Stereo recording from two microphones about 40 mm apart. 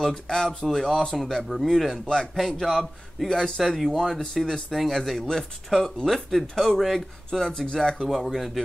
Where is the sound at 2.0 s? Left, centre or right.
Centre.